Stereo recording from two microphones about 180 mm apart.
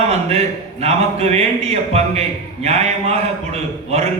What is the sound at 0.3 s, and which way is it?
Speech, 35° right (ahead or behind).